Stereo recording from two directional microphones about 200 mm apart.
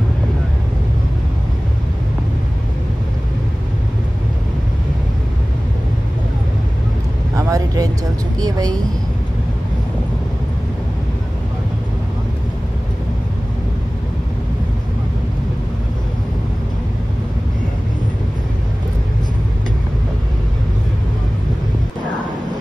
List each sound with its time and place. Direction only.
7.3 s vehicle: 15° right (ahead or behind)
8.4 s speech: 20° right (ahead or behind)